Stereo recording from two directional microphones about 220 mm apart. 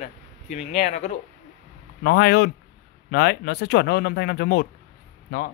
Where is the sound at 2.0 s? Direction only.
45° left (ahead or behind).